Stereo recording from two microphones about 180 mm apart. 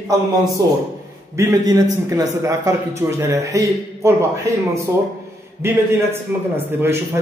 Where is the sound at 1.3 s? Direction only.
15° right (ahead or behind).